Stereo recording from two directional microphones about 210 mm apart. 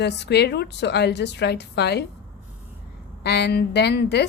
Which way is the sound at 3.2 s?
50° left (ahead or behind).